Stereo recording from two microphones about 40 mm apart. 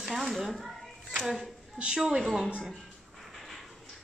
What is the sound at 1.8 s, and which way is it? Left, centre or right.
Speech, right.